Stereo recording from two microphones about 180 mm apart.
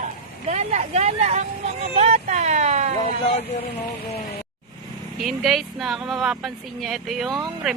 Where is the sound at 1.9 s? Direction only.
35° right (ahead or behind).